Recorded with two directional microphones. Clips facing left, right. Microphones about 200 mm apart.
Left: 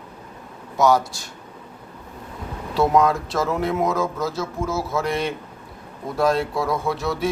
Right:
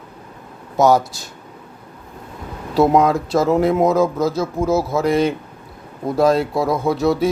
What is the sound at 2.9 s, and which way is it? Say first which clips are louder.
Speech: right 1 dB; 20° right (ahead or behind).